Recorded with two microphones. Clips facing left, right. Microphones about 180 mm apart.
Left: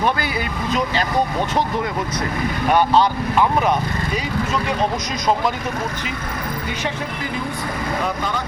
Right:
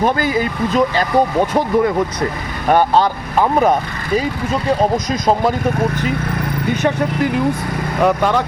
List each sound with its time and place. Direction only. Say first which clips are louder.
0.0 s speech: right 5 dB; 40° right (ahead or behind)
2.6 s speech: right 3 dB; 45° right (ahead or behind)
8.0 s speech: right 9 dB; 65° right (ahead or behind)